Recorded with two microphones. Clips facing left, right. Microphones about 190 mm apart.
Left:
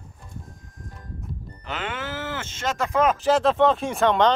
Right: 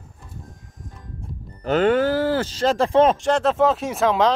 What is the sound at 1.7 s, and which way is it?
Speech, 40° right (ahead or behind).